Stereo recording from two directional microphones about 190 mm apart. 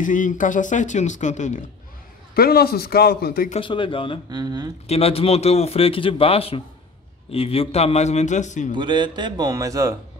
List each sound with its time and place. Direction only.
0.0 s a man's voice: 45° left (ahead or behind)
2.3 s a man's voice: 55° left (ahead or behind)
3.5 s speech: 25° left (ahead or behind)
4.3 s speech: 20° right (ahead or behind)
4.8 s a man's voice: 30° left (ahead or behind)
8.7 s speech: 25° right (ahead or behind)